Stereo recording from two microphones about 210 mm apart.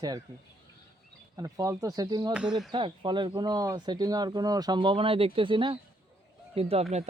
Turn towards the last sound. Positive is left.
turn(degrees=-30)  # may be behind; listen again after turning